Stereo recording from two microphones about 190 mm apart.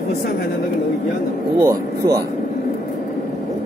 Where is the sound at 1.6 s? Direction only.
15° right (ahead or behind).